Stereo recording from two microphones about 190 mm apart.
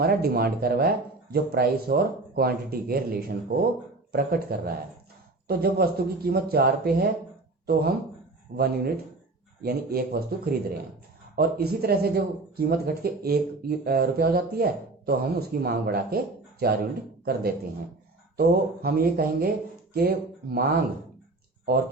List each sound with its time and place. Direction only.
0.0 s a man's voice: 55° right (ahead or behind)
18.3 s a man's voice: 55° right (ahead or behind)